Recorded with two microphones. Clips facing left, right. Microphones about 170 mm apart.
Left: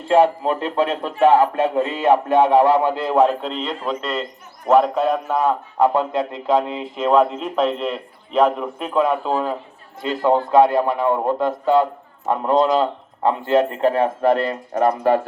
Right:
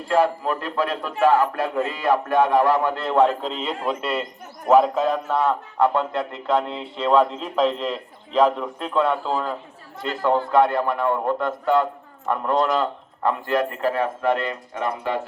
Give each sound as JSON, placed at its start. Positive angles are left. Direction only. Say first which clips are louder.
{"t": 0.1, "sound": "a man's voice", "louder": "left 5 dB", "side_deg": 25}